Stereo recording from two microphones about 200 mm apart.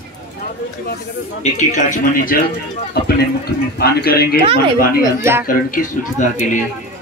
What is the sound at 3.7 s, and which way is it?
Speech, 50° left (ahead or behind).